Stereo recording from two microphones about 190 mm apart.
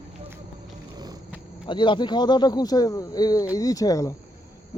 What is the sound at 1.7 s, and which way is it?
Speech, 25° left (ahead or behind).